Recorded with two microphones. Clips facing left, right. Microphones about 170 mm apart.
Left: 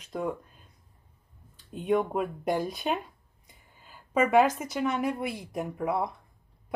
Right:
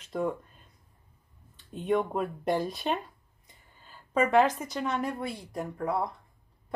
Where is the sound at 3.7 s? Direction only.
10° left (ahead or behind).